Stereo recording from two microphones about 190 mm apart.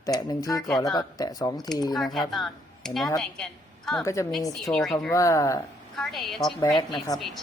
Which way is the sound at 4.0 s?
15° left (ahead or behind).